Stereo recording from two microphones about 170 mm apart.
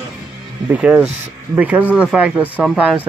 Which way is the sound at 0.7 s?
5° right (ahead or behind).